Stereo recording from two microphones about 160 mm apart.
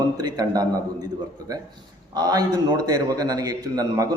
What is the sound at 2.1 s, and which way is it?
A man's voice, 25° right (ahead or behind).